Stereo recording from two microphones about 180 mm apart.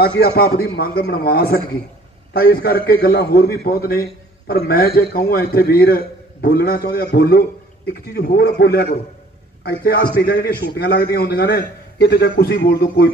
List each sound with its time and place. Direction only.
0.0 s a man's voice: 60° left (ahead or behind)